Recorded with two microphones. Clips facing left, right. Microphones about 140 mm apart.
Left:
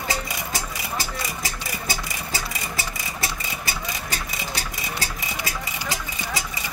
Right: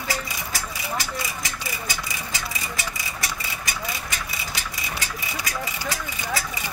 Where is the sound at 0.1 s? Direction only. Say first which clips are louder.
Left 1 dB; 25° left (ahead or behind).